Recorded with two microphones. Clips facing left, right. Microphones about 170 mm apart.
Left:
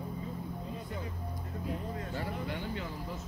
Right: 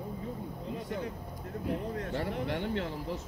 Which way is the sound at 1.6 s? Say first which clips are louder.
Right 5 dB; 70° right (ahead or behind).